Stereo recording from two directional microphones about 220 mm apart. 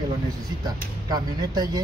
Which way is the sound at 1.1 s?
20° right (ahead or behind).